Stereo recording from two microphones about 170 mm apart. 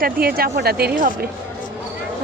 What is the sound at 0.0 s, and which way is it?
A woman's voice, 60° right (ahead or behind).